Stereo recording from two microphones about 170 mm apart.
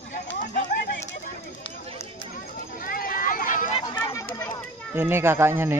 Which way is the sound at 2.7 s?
55° left (ahead or behind).